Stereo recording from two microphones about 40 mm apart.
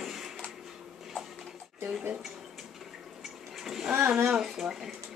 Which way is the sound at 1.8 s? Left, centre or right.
Right.